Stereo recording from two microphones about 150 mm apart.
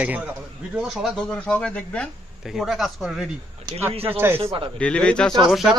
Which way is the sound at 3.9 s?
40° right (ahead or behind).